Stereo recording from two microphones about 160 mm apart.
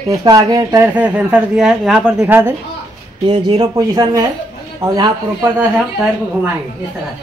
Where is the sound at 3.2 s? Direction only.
30° right (ahead or behind).